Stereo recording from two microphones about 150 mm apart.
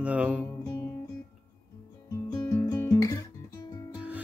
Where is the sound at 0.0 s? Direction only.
10° right (ahead or behind).